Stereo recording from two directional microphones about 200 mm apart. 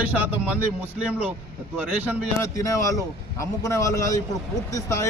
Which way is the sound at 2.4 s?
15° left (ahead or behind).